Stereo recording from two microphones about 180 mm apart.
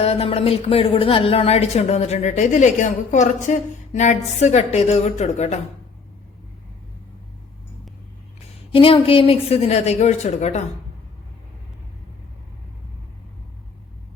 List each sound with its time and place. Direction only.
0.0 s speech: 35° left (ahead or behind)
8.7 s speech: 30° left (ahead or behind)